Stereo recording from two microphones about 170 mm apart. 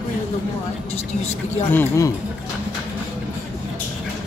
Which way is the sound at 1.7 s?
15° left (ahead or behind).